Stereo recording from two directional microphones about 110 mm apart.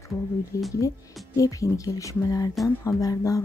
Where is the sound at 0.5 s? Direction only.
30° left (ahead or behind).